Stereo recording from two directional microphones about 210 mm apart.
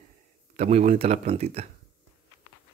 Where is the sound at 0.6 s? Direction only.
30° right (ahead or behind).